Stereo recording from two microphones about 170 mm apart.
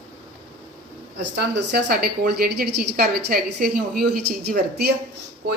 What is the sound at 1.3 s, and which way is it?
A woman's voice, 75° right (ahead or behind).